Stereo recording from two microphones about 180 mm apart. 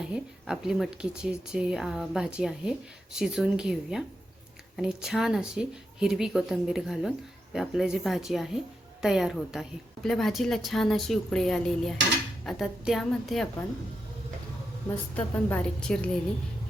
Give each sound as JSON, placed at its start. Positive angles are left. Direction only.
{"t": 0.0, "sound": "a woman's voice", "side_deg": -5}
{"t": 15.1, "sound": "a woman's voice", "side_deg": 10}